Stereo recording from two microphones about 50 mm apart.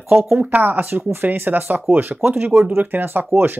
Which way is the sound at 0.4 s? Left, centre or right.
Right.